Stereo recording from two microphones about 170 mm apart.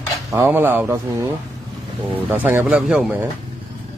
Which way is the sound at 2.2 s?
10° right (ahead or behind).